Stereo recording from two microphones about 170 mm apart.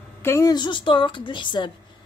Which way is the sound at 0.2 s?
15° left (ahead or behind).